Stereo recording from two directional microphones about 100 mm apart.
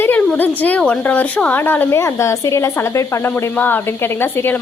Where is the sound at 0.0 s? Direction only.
20° left (ahead or behind).